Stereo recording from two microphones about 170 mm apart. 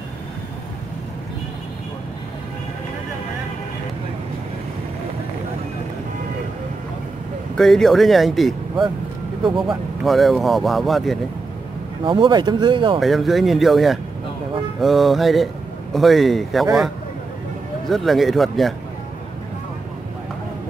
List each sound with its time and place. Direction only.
7.5 s speech: centre (ahead or behind)
12.0 s speech: 30° right (ahead or behind)
13.0 s speech: centre (ahead or behind)
17.8 s speech: centre (ahead or behind)